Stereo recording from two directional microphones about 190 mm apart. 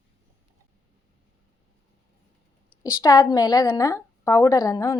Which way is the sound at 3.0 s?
20° left (ahead or behind).